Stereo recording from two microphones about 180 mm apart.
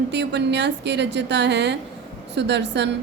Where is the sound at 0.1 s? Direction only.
75° right (ahead or behind).